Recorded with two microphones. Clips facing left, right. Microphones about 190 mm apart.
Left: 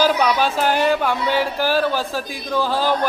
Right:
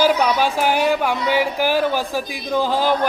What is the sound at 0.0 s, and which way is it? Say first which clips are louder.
Speech: right 1 dB; 15° right (ahead or behind).